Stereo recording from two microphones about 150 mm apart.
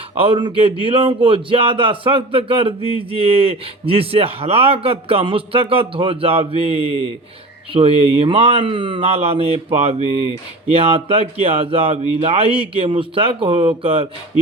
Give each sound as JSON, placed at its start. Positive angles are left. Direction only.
{"t": 0.2, "sound": "a man's voice", "side_deg": -35}